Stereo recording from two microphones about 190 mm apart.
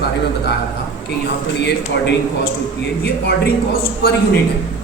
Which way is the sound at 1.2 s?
65° left (ahead or behind).